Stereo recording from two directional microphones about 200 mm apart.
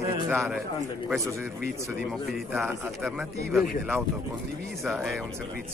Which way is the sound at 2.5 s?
10° right (ahead or behind).